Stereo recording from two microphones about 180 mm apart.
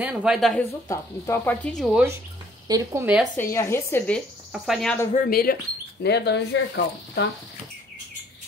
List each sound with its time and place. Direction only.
0.0 s speech: 5° right (ahead or behind)
0.8 s speech: 15° left (ahead or behind); by 2.0 s centre (ahead or behind)
2.7 s speech: 15° right (ahead or behind)
3.3 s speech: 15° left (ahead or behind); by 4.9 s centre (ahead or behind)
5.1 s speech: 55° left (ahead or behind)
6.0 s speech: 70° left (ahead or behind)